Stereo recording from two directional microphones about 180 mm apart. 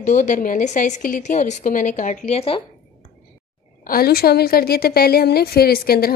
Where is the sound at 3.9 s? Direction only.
60° left (ahead or behind).